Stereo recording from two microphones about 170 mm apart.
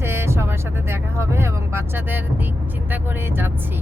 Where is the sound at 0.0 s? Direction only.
15° right (ahead or behind).